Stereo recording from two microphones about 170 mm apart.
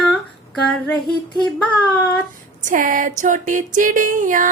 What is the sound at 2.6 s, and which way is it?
A woman's voice, 50° right (ahead or behind).